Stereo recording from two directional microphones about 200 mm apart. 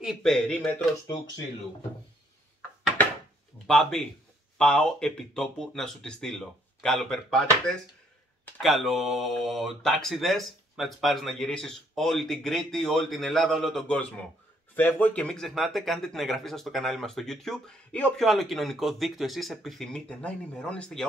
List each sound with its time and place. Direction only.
0.0 s a man's voice: centre (ahead or behind)
1.0 s speech: 20° left (ahead or behind)
4.6 s a man's voice: 5° left (ahead or behind)